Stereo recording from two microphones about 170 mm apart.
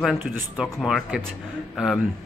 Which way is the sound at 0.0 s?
Centre (ahead or behind).